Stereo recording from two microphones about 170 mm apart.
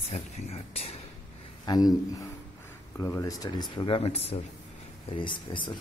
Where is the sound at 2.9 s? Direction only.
15° left (ahead or behind).